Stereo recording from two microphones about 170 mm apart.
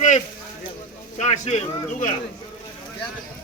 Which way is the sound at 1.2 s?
40° left (ahead or behind).